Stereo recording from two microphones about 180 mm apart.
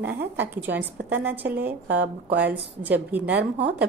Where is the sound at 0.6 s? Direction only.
10° right (ahead or behind).